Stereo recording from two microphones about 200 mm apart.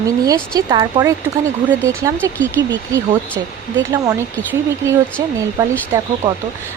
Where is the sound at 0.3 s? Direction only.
20° right (ahead or behind).